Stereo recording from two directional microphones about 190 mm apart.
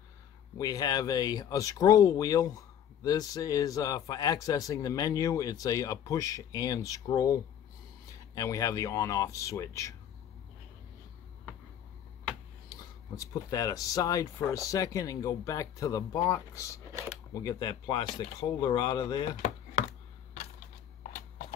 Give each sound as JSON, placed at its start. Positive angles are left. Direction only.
{"t": 0.6, "sound": "speech", "side_deg": 20}
{"t": 13.2, "sound": "speech", "side_deg": 20}